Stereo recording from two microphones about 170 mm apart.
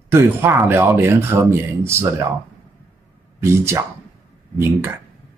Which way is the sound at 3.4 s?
15° right (ahead or behind).